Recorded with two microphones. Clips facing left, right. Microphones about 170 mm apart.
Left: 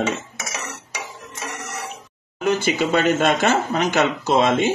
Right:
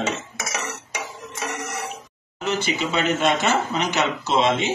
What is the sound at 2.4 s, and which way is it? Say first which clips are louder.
Speech: left 5 dB; 50° left (ahead or behind).